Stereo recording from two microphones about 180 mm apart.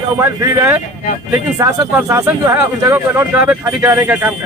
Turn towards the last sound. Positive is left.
turn(degrees=-15)  # may be behind; listen again after turning